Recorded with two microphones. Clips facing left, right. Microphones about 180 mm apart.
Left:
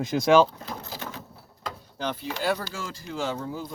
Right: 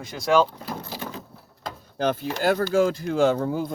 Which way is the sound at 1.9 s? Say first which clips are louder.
Right 7 dB; 50° right (ahead or behind).